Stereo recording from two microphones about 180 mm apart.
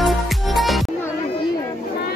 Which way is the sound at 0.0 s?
Centre (ahead or behind).